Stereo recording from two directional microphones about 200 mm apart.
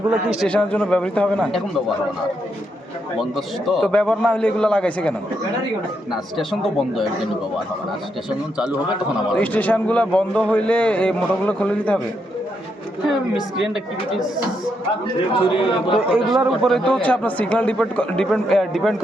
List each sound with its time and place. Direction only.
0.3 s a man's voice: centre (ahead or behind)
3.2 s a man's voice: centre (ahead or behind)
9.4 s a man's voice: 5° left (ahead or behind)
15.3 s a man's voice: 25° left (ahead or behind)
16.1 s a man's voice: 5° right (ahead or behind)